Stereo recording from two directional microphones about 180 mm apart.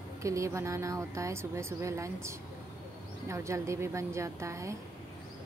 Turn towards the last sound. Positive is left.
turn(degrees=-15)  # may be behind; listen again after turning